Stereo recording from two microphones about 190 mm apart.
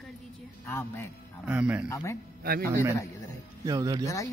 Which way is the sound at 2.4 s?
50° right (ahead or behind).